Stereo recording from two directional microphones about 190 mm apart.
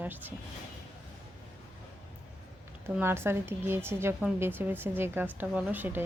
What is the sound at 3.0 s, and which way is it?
Speech, 10° right (ahead or behind).